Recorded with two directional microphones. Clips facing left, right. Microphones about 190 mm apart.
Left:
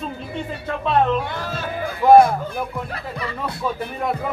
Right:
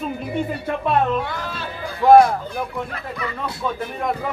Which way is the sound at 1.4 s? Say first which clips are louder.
Left 3 dB; 45° left (ahead or behind).